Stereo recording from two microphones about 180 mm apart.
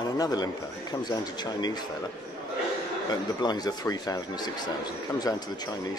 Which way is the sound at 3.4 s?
25° left (ahead or behind).